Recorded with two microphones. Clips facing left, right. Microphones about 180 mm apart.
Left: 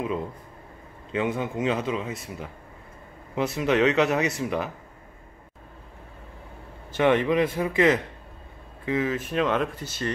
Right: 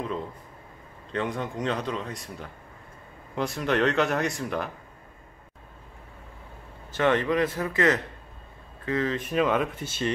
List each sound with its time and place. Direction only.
1.1 s speech: 5° left (ahead or behind)
7.0 s a man's voice: 15° left (ahead or behind)
9.3 s speech: 5° right (ahead or behind)
9.8 s speech: 25° right (ahead or behind)